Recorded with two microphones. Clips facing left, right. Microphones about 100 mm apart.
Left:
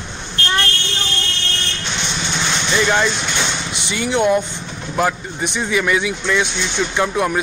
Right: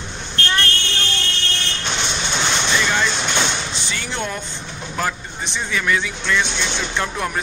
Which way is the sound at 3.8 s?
15° left (ahead or behind).